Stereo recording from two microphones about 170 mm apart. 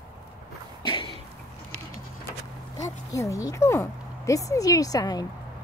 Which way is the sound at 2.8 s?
20° left (ahead or behind).